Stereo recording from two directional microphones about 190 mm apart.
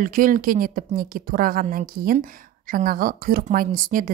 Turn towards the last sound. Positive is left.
turn(degrees=-45)  # may be behind; listen again after turning